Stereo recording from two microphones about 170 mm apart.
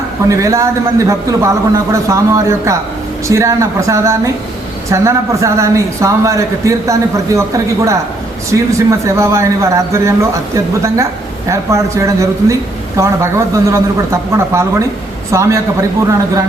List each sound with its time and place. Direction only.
0.3 s a man's voice: 20° right (ahead or behind)